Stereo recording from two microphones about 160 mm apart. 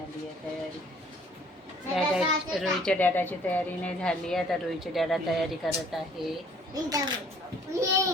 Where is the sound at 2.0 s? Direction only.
Centre (ahead or behind).